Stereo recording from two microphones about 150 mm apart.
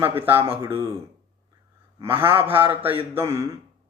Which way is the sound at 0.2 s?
15° right (ahead or behind).